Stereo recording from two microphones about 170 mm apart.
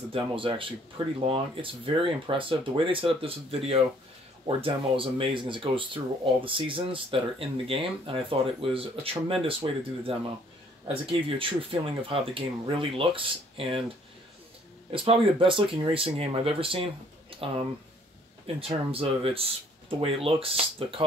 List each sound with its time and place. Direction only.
0.1 s speech: 30° right (ahead or behind)
14.9 s speech: 35° right (ahead or behind)
18.6 s speech: 35° right (ahead or behind)